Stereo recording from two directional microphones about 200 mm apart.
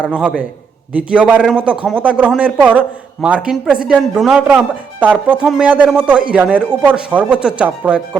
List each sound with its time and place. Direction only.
0.0 s a man's voice: 5° right (ahead or behind)